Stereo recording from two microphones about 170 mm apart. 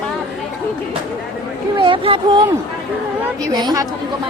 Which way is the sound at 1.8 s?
30° right (ahead or behind).